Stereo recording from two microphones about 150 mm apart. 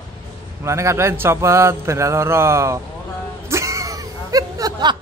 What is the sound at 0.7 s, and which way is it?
A man's voice, 20° right (ahead or behind).